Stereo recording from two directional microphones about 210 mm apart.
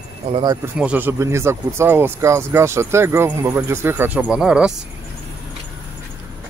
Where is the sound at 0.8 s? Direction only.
5° right (ahead or behind).